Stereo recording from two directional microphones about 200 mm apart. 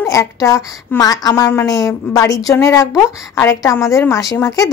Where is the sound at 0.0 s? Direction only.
15° left (ahead or behind).